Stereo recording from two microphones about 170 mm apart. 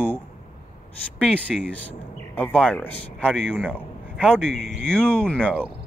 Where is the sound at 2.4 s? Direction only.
10° left (ahead or behind).